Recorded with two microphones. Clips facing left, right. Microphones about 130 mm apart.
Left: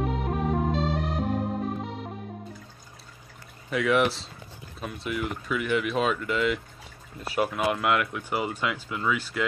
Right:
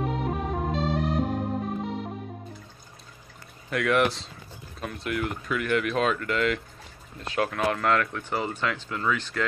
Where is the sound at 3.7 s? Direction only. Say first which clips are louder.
Even; centre (ahead or behind).